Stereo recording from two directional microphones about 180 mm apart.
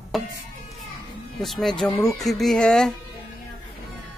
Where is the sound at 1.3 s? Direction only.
Centre (ahead or behind).